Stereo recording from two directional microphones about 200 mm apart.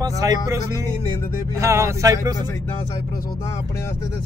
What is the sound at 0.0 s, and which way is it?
Speech, 20° right (ahead or behind).